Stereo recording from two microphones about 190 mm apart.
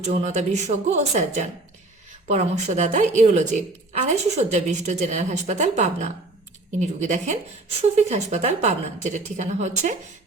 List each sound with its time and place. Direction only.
0.0 s a woman's voice: 35° right (ahead or behind)